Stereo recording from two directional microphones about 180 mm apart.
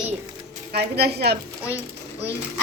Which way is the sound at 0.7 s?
60° right (ahead or behind).